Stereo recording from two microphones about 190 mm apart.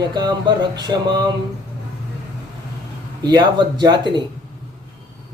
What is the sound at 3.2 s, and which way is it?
Speech, 20° right (ahead or behind).